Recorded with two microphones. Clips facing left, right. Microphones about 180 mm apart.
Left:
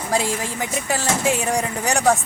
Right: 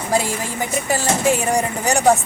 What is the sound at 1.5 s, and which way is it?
Speech, centre (ahead or behind).